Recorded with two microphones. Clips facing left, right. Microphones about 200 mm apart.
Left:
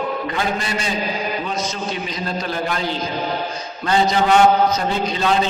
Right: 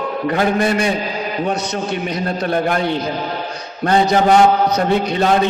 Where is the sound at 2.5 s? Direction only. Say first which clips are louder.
Right 8 dB; 60° right (ahead or behind).